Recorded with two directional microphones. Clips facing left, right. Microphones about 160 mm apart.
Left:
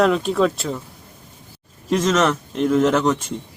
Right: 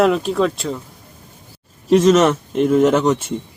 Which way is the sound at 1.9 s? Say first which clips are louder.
Right 6 dB; 10° right (ahead or behind).